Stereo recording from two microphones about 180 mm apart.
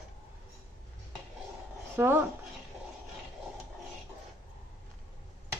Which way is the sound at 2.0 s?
10° right (ahead or behind).